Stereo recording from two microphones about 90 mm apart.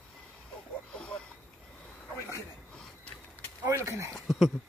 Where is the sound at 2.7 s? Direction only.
10° left (ahead or behind).